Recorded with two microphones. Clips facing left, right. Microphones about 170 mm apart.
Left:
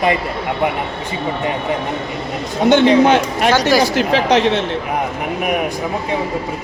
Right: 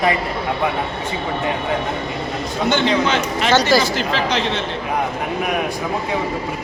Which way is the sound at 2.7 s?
55° left (ahead or behind).